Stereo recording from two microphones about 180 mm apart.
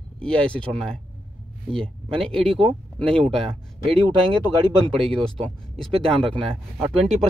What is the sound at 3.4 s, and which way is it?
Speech, 30° right (ahead or behind).